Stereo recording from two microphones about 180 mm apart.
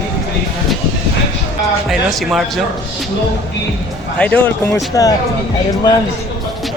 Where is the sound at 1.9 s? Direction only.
Centre (ahead or behind).